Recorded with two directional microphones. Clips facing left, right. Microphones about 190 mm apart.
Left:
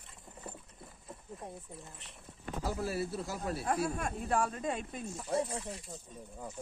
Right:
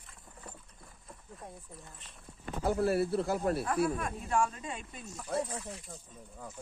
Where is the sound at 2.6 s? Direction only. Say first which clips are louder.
Right 7 dB; 55° right (ahead or behind).